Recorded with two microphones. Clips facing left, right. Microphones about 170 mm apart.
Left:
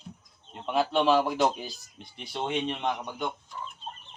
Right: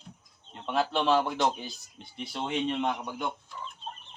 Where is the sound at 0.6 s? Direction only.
Centre (ahead or behind).